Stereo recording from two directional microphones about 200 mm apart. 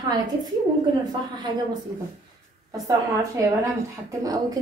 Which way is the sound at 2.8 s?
15° right (ahead or behind).